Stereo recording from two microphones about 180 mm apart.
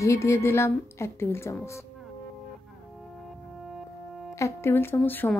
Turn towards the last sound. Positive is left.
turn(degrees=10)  # may be behind; listen again after turning